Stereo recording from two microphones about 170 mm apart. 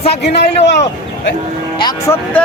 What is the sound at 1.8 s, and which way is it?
Speech, 25° left (ahead or behind).